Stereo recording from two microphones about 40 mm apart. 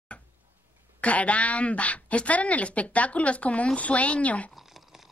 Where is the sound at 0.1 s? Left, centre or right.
Left.